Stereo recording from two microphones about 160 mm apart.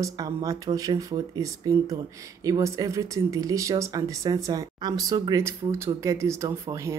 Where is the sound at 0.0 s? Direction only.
20° right (ahead or behind).